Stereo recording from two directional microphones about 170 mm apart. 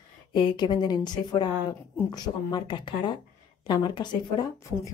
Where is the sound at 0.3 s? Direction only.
25° left (ahead or behind).